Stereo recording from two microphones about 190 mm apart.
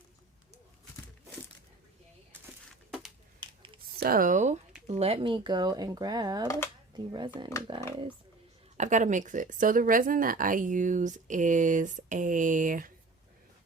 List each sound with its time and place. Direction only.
3.9 s speech: 50° right (ahead or behind); by 7.8 s 25° right (ahead or behind)
8.8 s speech: 40° right (ahead or behind)